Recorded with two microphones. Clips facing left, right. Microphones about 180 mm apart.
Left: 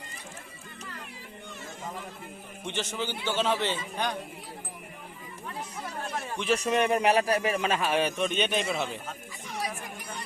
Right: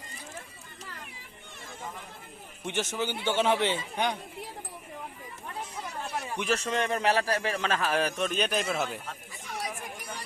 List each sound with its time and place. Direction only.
2.6 s a man's voice: 10° right (ahead or behind)
6.5 s a man's voice: 15° left (ahead or behind)